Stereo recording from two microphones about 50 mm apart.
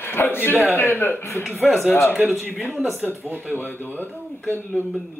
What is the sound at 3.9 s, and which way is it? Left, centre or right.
Speech, left.